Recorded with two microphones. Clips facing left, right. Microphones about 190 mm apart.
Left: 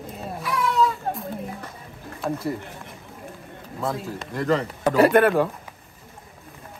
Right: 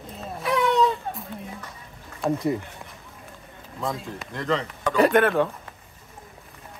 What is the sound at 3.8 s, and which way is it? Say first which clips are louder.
Speech: left 2 dB; 5° left (ahead or behind).